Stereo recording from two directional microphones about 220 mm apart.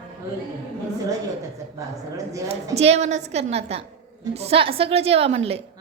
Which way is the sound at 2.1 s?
15° right (ahead or behind).